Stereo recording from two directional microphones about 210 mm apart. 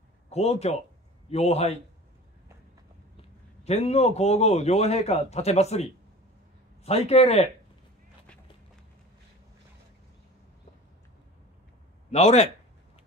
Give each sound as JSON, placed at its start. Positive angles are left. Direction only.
{"t": 0.3, "sound": "a man's voice", "side_deg": 30}
{"t": 3.2, "sound": "a man's voice", "side_deg": 30}
{"t": 12.1, "sound": "speech", "side_deg": 30}